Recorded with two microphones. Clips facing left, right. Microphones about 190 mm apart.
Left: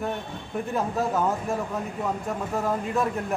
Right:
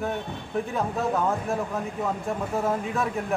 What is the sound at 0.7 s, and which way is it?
Speech, centre (ahead or behind).